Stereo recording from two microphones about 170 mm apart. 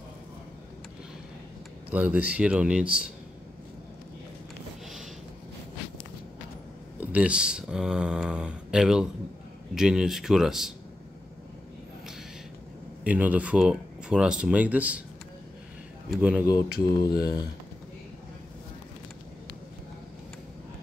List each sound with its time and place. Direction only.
1.9 s speech: 10° right (ahead or behind)
7.0 s speech: 10° right (ahead or behind)
13.0 s speech: 10° right (ahead or behind)
16.1 s speech: 5° right (ahead or behind)
16.6 s mantra: 70° left (ahead or behind)